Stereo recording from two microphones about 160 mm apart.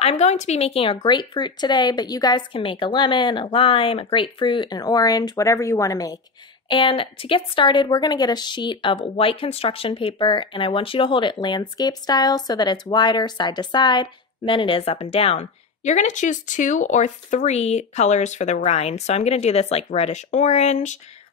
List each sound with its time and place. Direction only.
0.0 s a woman's voice: 45° left (ahead or behind)